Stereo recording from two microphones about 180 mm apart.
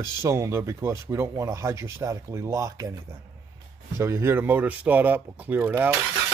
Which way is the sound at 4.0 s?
15° right (ahead or behind).